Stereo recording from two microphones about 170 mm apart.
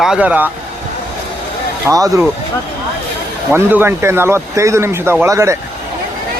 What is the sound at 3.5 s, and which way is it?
Speech, 10° right (ahead or behind).